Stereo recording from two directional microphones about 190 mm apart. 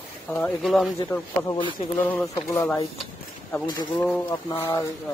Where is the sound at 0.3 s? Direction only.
5° left (ahead or behind).